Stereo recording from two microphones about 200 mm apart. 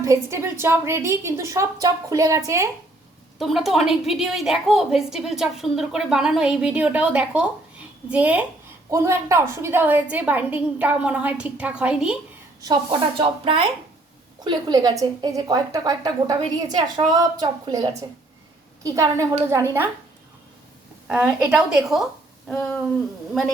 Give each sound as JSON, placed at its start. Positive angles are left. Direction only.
{"t": 0.0, "sound": "a woman's voice", "side_deg": -15}
{"t": 3.3, "sound": "a woman's voice", "side_deg": 0}
{"t": 12.6, "sound": "a woman's voice", "side_deg": -25}
{"t": 21.1, "sound": "a woman's voice", "side_deg": -5}